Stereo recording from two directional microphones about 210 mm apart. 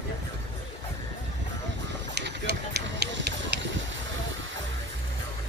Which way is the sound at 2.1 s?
55° right (ahead or behind).